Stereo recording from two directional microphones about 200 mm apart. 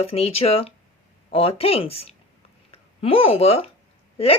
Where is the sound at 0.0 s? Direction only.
30° left (ahead or behind).